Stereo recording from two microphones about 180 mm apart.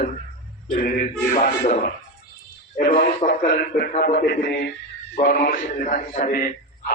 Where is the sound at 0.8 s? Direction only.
45° left (ahead or behind).